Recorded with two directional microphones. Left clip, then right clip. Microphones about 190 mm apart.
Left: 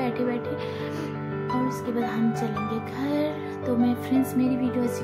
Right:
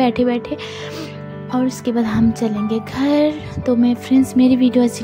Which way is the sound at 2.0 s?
35° right (ahead or behind).